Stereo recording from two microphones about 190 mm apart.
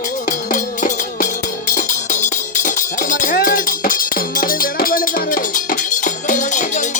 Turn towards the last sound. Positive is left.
turn(degrees=40)  # may be behind; listen again after turning